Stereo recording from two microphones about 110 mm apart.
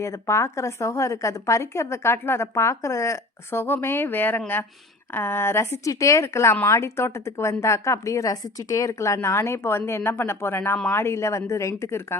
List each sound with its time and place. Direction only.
0.0 s speech: 25° left (ahead or behind)